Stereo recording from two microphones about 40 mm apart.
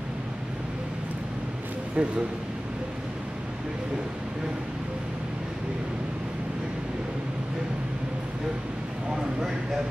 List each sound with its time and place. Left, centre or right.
2.0 s speech: right